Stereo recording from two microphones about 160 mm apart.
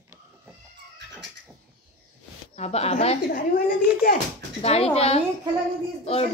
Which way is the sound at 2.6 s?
40° left (ahead or behind).